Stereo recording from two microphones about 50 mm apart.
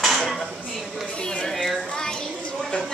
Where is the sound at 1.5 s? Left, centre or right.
Centre.